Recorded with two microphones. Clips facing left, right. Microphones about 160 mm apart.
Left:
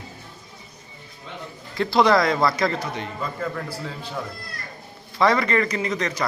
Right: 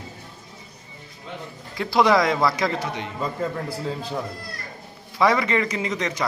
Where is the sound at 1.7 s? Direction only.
10° right (ahead or behind).